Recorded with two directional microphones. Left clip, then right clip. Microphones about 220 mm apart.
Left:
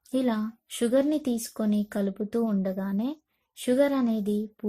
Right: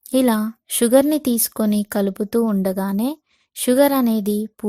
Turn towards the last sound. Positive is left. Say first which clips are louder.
# right 7 dB
turn(degrees=-40)  # may be behind; listen again after turning